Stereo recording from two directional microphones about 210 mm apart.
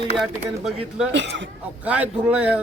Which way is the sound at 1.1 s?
55° right (ahead or behind).